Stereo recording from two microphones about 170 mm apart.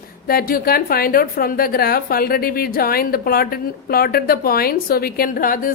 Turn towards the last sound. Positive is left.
turn(degrees=55)  # may be behind; listen again after turning